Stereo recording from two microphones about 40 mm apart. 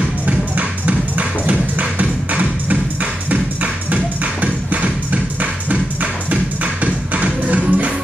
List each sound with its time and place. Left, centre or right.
0.3 s music: right